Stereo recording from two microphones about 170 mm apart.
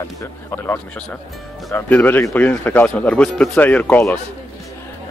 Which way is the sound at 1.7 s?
10° left (ahead or behind).